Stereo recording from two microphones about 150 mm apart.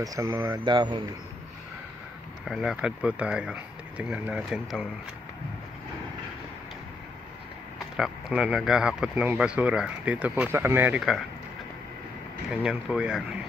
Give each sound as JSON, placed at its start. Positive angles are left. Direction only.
{"t": 0.0, "sound": "speech", "side_deg": -25}
{"t": 2.4, "sound": "speech", "side_deg": 0}
{"t": 8.0, "sound": "speech", "side_deg": -10}
{"t": 12.4, "sound": "speech", "side_deg": -5}